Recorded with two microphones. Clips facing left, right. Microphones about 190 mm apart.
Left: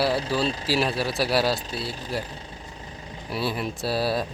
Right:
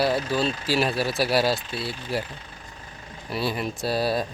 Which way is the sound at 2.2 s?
30° left (ahead or behind).